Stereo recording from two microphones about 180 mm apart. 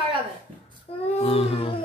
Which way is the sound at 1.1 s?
35° left (ahead or behind).